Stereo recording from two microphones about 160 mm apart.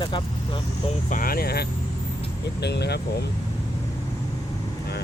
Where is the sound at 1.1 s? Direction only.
65° left (ahead or behind); by 1.7 s 80° left.